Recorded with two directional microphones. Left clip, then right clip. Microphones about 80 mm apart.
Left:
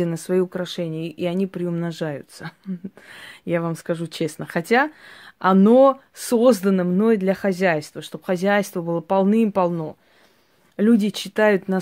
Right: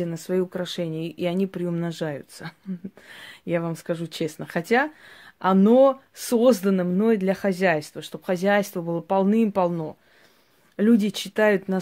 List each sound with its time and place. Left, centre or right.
0.0 s speech: left
0.6 s speech: left
7.2 s speech: left